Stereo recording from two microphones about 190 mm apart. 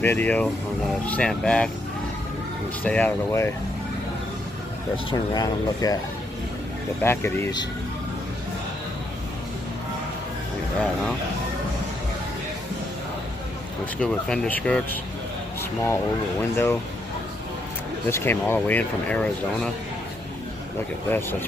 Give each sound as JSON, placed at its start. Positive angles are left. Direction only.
{"t": 0.0, "sound": "speech", "side_deg": 10}
{"t": 2.8, "sound": "speech", "side_deg": 10}
{"t": 4.9, "sound": "speech", "side_deg": 20}
{"t": 7.0, "sound": "speech", "side_deg": 10}
{"t": 13.9, "sound": "speech", "side_deg": 5}
{"t": 18.1, "sound": "speech", "side_deg": 10}
{"t": 21.1, "sound": "speech", "side_deg": 10}